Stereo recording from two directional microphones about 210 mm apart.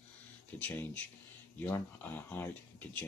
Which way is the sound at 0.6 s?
5° left (ahead or behind).